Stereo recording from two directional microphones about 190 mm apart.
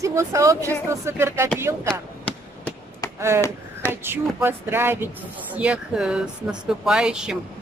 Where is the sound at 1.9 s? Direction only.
10° left (ahead or behind).